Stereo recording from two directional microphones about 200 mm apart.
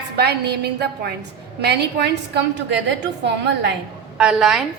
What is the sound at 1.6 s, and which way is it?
Speech, 55° right (ahead or behind).